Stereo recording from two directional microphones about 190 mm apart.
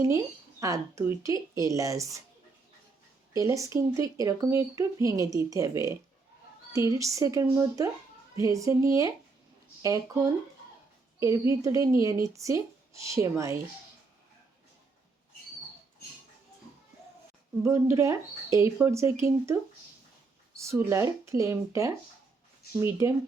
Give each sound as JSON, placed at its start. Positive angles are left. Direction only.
{"t": 0.6, "sound": "speech", "side_deg": -15}
{"t": 3.3, "sound": "speech", "side_deg": -15}
{"t": 17.6, "sound": "speech", "side_deg": -15}
{"t": 20.6, "sound": "speech", "side_deg": -15}